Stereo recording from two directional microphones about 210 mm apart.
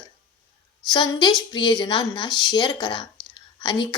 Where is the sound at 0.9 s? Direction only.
20° left (ahead or behind).